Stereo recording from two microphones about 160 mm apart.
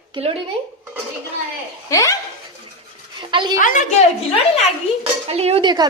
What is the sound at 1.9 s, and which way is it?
Speech, 20° left (ahead or behind).